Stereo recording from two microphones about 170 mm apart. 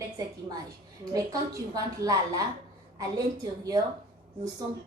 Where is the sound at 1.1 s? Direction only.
20° right (ahead or behind).